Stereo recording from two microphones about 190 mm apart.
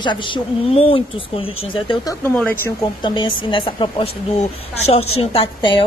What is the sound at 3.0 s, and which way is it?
Speech, 25° left (ahead or behind).